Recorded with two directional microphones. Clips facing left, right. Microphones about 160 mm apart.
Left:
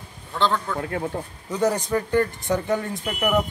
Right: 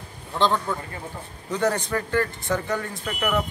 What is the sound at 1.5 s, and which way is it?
Speech, 10° left (ahead or behind).